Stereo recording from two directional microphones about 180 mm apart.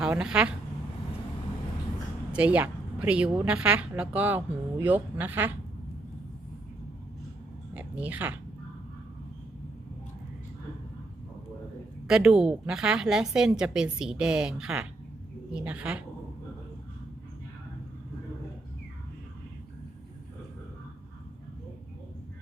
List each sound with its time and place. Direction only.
0.0 s speech: 5° right (ahead or behind)
2.3 s a woman's voice: 5° right (ahead or behind)
7.7 s a sound: 10° right (ahead or behind)
12.0 s a woman's voice: 5° right (ahead or behind)